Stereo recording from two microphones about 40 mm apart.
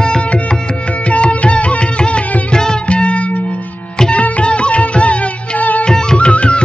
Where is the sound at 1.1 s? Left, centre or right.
Left.